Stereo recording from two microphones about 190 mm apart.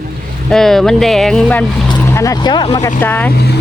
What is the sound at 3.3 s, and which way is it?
Speech, 60° left (ahead or behind).